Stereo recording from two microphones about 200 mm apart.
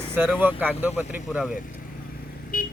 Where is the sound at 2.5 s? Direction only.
40° left (ahead or behind).